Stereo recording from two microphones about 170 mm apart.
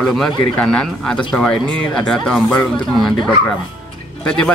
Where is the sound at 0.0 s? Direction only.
5° left (ahead or behind).